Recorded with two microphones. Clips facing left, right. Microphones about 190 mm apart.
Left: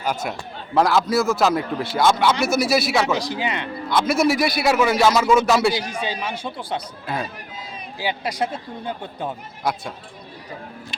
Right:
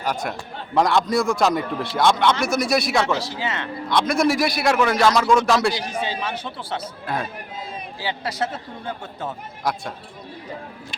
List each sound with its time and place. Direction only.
0.0 s a man's voice: centre (ahead or behind)
3.1 s speech: 15° left (ahead or behind)
3.8 s a man's voice: 5° left (ahead or behind)
7.9 s speech: 15° left (ahead or behind)
9.7 s a man's voice: centre (ahead or behind)